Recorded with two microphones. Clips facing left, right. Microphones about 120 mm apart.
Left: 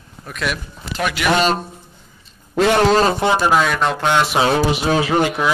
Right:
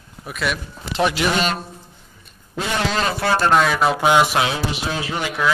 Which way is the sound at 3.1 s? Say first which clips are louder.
Left 2 dB; 20° left (ahead or behind).